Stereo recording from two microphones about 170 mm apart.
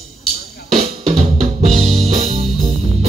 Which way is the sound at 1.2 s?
40° right (ahead or behind).